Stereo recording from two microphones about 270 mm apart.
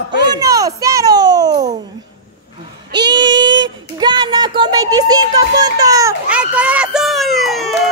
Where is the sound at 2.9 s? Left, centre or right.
Centre.